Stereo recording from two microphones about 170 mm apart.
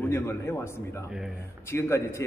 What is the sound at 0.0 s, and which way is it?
Speech, 10° left (ahead or behind).